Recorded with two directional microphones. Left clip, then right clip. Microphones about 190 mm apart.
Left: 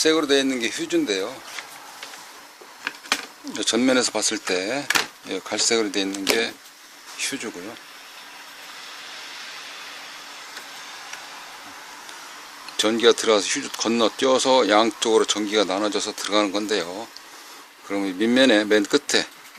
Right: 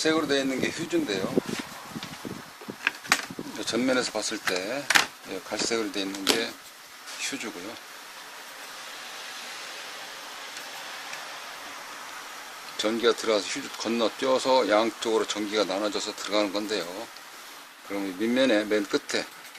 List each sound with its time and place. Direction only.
0.0 s speech: 45° left (ahead or behind)
2.9 s a sound: 10° right (ahead or behind)
3.5 s speech: 40° left (ahead or behind)
7.2 s speech: 35° left (ahead or behind)
12.7 s speech: 40° left (ahead or behind)
17.9 s speech: 40° left (ahead or behind)